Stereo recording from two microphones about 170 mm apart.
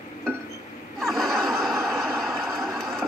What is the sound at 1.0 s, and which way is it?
Snicker, centre (ahead or behind).